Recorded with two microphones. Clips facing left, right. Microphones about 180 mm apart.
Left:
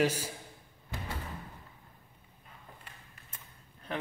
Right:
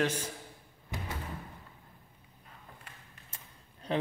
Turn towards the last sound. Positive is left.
turn(degrees=-25)  # may be behind; listen again after turning